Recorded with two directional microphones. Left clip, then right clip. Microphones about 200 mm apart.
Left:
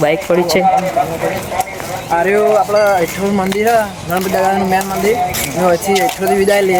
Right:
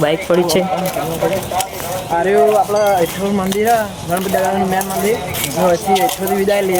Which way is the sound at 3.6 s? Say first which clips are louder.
Left 2 dB; 20° left (ahead or behind).